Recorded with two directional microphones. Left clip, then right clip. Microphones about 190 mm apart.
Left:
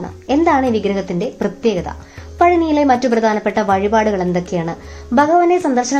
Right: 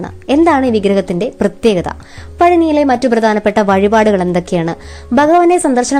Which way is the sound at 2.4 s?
40° right (ahead or behind).